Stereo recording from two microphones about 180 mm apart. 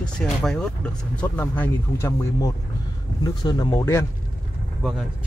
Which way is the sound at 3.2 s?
25° left (ahead or behind).